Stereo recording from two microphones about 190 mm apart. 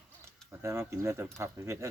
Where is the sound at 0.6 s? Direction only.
15° right (ahead or behind).